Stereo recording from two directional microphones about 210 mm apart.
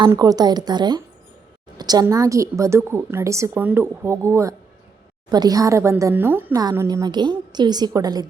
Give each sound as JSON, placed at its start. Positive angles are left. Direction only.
{"t": 0.0, "sound": "a woman's voice", "side_deg": -15}